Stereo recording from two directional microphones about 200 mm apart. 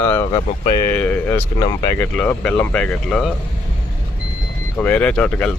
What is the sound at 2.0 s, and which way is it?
Speech, 10° left (ahead or behind).